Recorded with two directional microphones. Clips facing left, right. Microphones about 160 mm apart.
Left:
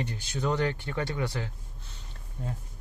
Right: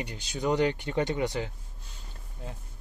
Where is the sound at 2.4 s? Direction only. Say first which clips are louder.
Left 5 dB; centre (ahead or behind).